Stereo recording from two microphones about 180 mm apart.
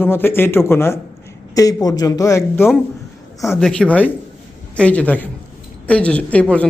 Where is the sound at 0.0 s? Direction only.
10° left (ahead or behind).